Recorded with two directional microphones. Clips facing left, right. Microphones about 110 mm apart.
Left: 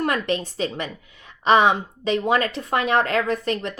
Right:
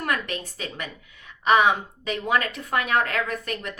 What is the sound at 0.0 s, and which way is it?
A woman's voice, 30° left (ahead or behind).